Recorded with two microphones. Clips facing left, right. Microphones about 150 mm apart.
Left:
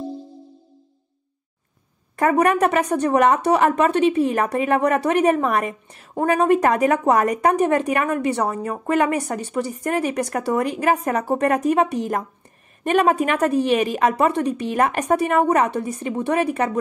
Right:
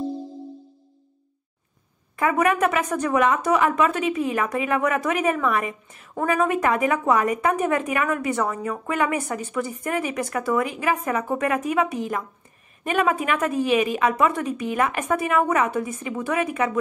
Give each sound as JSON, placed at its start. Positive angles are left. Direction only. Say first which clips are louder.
{"t": 2.1, "sound": "a woman's voice", "louder": "left 3 dB", "side_deg": 40}